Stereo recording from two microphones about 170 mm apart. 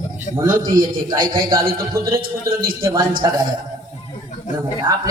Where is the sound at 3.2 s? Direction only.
25° right (ahead or behind).